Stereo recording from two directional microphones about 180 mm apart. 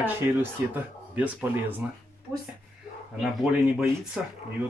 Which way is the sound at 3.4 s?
15° right (ahead or behind).